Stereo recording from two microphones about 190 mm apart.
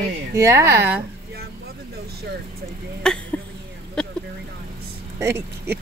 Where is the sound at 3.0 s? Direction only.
5° left (ahead or behind).